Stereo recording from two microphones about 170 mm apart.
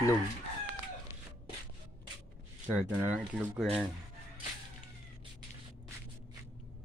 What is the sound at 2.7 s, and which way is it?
Speech, 10° right (ahead or behind).